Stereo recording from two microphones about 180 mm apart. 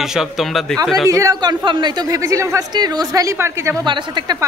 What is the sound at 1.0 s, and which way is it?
Speech, 15° right (ahead or behind).